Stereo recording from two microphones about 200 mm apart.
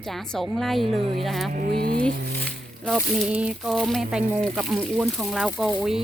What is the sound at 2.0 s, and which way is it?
Speech, 5° left (ahead or behind).